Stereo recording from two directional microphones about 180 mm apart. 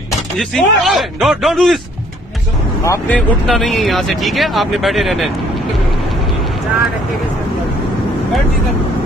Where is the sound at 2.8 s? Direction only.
15° left (ahead or behind).